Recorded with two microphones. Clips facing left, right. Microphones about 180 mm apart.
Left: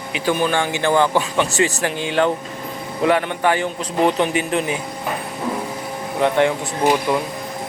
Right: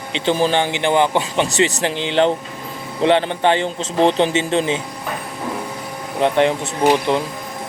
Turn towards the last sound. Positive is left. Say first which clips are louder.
# right 2 dB
turn(degrees=-25)  # may be behind; listen again after turning